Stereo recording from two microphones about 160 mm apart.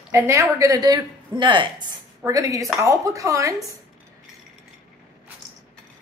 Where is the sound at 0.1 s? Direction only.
20° right (ahead or behind).